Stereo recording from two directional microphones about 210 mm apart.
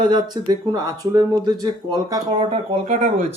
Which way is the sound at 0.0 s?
20° right (ahead or behind).